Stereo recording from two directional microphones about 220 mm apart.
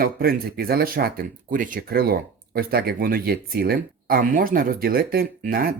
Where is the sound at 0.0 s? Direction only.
45° right (ahead or behind).